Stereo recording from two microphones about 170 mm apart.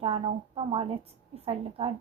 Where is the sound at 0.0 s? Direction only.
35° right (ahead or behind).